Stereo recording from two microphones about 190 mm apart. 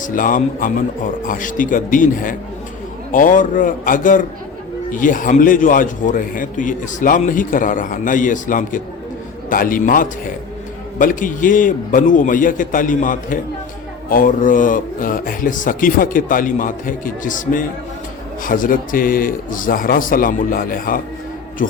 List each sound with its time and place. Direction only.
0.0 s a man's voice: 45° left (ahead or behind)